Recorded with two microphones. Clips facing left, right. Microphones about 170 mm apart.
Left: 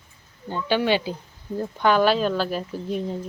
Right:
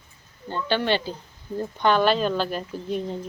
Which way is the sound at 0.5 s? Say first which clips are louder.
Left 2 dB; 10° left (ahead or behind).